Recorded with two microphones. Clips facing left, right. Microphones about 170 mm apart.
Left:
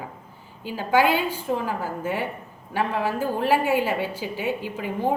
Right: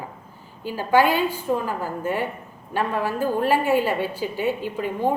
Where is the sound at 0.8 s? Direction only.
15° left (ahead or behind).